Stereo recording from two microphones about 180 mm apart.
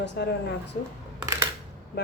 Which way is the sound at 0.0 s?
70° left (ahead or behind).